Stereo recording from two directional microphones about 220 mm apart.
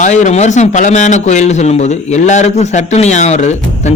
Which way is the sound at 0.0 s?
35° left (ahead or behind).